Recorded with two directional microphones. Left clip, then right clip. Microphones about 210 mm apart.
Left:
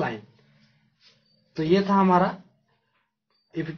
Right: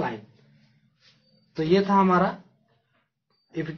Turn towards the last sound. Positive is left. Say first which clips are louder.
# even
turn(degrees=10)  # may be behind; listen again after turning